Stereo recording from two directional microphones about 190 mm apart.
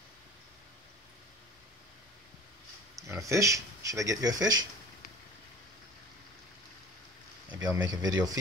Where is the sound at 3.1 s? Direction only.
15° right (ahead or behind).